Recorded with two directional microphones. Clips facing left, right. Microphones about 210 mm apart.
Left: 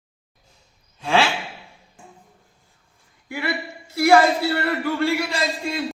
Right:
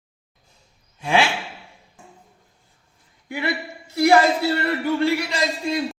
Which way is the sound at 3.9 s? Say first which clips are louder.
Even; 20° right (ahead or behind).